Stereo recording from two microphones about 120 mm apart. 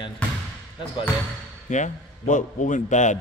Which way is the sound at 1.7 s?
90° left.